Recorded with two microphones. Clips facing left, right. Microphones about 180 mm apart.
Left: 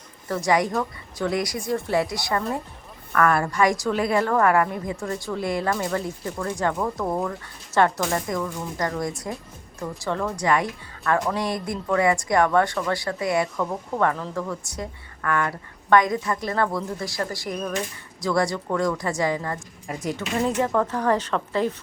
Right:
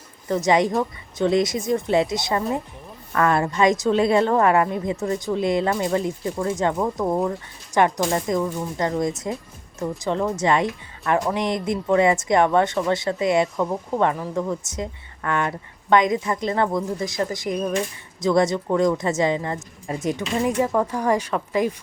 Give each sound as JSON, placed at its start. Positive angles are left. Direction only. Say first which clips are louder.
{"t": 0.3, "sound": "speech", "louder": "right 3 dB", "side_deg": -20}